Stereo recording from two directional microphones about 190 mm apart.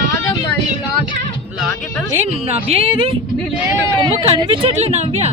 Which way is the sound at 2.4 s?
30° right (ahead or behind).